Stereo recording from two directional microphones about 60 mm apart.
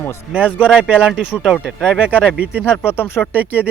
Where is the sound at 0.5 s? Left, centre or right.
Centre.